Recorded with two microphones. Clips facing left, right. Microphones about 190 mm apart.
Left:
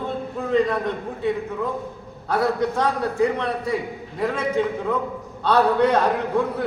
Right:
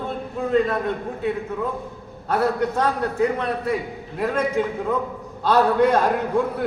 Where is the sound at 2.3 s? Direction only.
5° right (ahead or behind).